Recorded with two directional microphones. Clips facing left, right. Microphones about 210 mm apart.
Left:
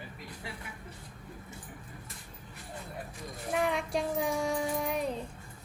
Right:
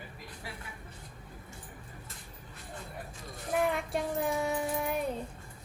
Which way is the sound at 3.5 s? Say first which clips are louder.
Even; centre (ahead or behind).